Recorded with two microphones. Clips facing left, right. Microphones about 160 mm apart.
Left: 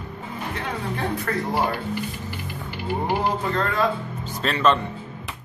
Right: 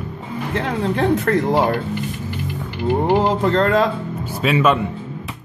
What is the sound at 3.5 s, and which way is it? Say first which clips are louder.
Speech: right 8 dB; 75° right (ahead or behind).